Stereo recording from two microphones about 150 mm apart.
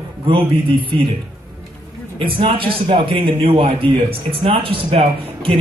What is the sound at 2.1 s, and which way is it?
A man's voice, 35° right (ahead or behind).